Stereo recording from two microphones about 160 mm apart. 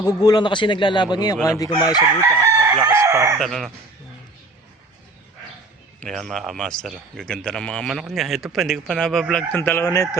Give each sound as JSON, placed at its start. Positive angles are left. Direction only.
{"t": 0.0, "sound": "a man's voice", "side_deg": 25}
{"t": 2.4, "sound": "chicken", "side_deg": -20}
{"t": 3.3, "sound": "speech", "side_deg": 0}
{"t": 6.0, "sound": "speech", "side_deg": 0}